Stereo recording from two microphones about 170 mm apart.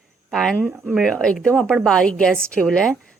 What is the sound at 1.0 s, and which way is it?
A woman's voice, 5° left (ahead or behind).